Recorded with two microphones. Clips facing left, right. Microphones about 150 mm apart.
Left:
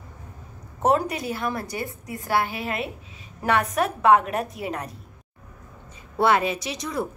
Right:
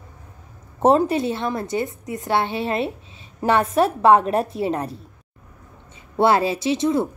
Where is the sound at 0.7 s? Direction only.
30° right (ahead or behind).